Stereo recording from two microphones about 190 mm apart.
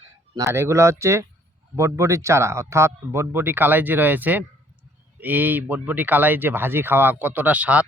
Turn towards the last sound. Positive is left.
turn(degrees=-5)  # may be behind; listen again after turning